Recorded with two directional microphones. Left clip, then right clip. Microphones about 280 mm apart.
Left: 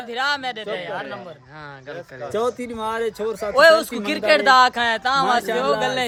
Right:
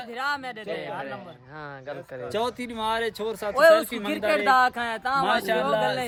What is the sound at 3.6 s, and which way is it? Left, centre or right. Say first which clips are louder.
Speech: left 4 dB; left.